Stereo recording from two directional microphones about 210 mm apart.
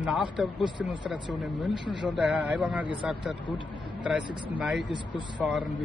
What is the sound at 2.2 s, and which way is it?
A man's voice, centre (ahead or behind).